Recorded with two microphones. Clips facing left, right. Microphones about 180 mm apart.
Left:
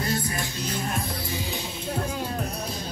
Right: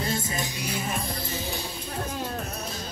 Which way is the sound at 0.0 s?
25° right (ahead or behind).